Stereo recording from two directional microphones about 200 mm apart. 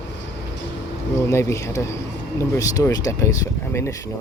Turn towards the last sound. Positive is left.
turn(degrees=15)  # may be behind; listen again after turning